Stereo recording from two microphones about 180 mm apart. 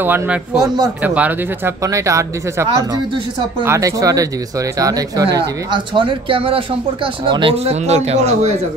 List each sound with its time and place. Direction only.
0.0 s speech: 10° right (ahead or behind); by 8.5 s 40° right (ahead or behind)